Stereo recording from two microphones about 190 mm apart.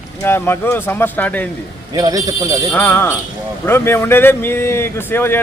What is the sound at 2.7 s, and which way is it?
A man's voice, 10° left (ahead or behind).